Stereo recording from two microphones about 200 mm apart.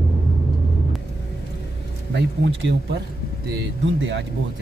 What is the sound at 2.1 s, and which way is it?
Speech, 60° right (ahead or behind).